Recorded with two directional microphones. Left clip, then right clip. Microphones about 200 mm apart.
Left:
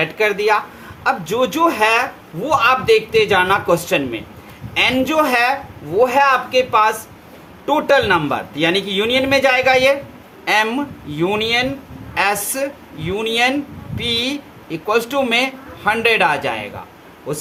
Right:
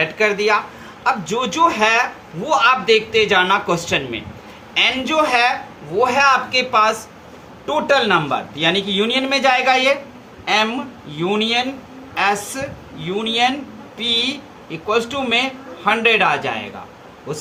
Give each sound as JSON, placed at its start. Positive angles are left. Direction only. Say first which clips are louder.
{"t": 0.0, "sound": "a man's voice", "louder": "even", "side_deg": 45}